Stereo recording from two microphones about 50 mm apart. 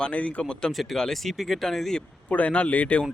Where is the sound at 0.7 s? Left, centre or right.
Centre.